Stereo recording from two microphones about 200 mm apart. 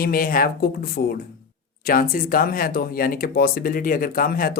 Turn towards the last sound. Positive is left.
turn(degrees=45)  # may be behind; listen again after turning